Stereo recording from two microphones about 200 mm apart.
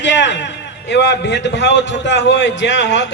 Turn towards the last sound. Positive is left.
turn(degrees=65)  # may be behind; listen again after turning